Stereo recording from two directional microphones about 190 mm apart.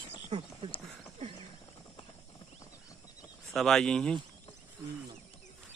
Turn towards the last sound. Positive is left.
turn(degrees=5)  # may be behind; listen again after turning